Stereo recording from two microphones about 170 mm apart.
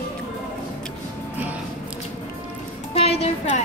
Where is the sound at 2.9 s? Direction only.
35° left (ahead or behind).